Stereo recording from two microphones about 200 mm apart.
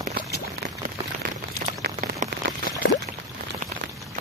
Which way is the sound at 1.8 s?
40° right (ahead or behind).